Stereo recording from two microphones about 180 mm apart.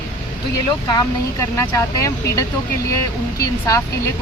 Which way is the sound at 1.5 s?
15° left (ahead or behind).